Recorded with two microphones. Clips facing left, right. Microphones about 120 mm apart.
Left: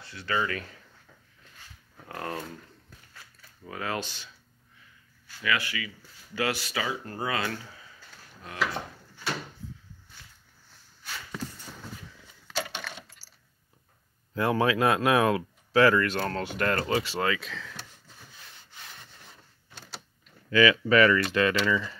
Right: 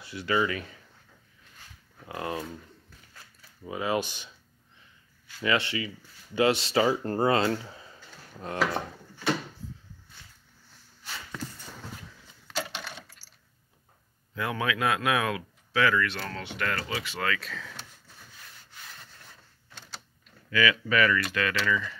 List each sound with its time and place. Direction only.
0.0 s speech: 15° right (ahead or behind)
2.0 s speech: 10° right (ahead or behind)
3.6 s speech: 15° right (ahead or behind)
5.4 s speech: 25° right (ahead or behind)
14.3 s speech: 35° left (ahead or behind)
17.0 s speech: 35° left (ahead or behind)
17.4 s speech: centre (ahead or behind)
20.4 s speech: 25° left (ahead or behind)